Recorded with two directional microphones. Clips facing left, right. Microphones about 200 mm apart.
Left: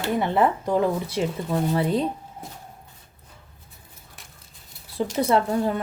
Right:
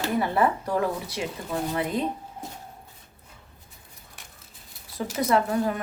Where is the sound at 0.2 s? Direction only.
20° left (ahead or behind).